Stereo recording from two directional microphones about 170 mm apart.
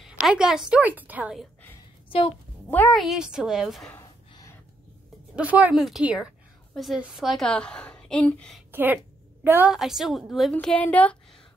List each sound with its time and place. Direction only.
0.0 s a woman's voice: 5° right (ahead or behind)
2.0 s a sound: 30° left (ahead or behind)
2.7 s speech: 10° left (ahead or behind)
3.0 s a woman's voice: 5° right (ahead or behind)
4.3 s gasp: 20° left (ahead or behind)
5.3 s a woman's voice: 10° right (ahead or behind)
8.7 s a woman's voice: 10° right (ahead or behind); by 11.4 s 10° left (ahead or behind)